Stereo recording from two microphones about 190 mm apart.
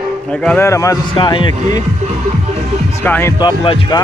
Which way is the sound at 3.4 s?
30° left (ahead or behind).